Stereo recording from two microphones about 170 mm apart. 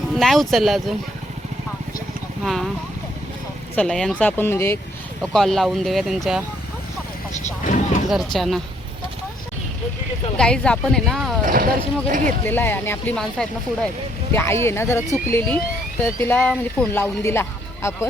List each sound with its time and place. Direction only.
0.1 s speech: centre (ahead or behind)
2.4 s speech: centre (ahead or behind)
3.8 s speech: 5° left (ahead or behind)
5.2 s speech: centre (ahead or behind)
8.0 s speech: centre (ahead or behind)
10.3 s speech: 5° left (ahead or behind)
11.4 s speech: 60° right (ahead or behind)
12.5 s speech: 10° left (ahead or behind)